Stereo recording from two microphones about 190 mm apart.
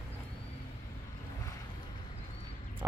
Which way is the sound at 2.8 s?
15° right (ahead or behind).